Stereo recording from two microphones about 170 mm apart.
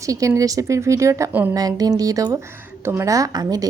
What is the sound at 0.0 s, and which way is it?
A woman's voice, 20° right (ahead or behind).